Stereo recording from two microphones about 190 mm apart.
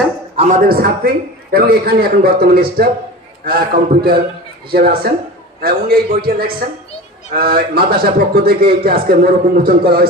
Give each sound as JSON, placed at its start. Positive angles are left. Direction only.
{"t": 0.3, "sound": "a man's voice", "side_deg": -45}